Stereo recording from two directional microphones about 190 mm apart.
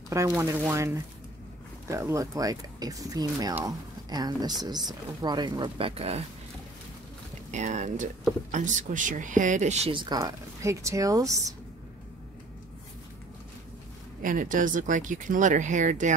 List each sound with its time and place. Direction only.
0.1 s speech: 15° right (ahead or behind); by 6.2 s 30° right (ahead or behind)
7.5 s speech: 40° right (ahead or behind); by 11.5 s 15° right (ahead or behind)
14.2 s speech: 45° right (ahead or behind)